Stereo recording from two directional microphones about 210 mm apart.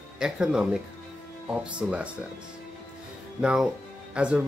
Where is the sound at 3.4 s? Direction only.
5° right (ahead or behind).